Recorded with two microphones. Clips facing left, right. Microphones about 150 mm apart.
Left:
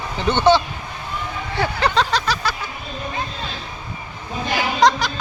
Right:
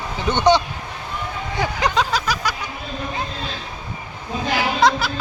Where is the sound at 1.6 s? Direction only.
15° right (ahead or behind).